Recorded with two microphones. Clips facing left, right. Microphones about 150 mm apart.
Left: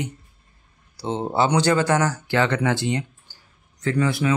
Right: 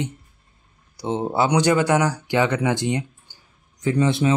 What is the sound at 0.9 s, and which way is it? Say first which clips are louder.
Speech: right 1 dB; 15° right (ahead or behind).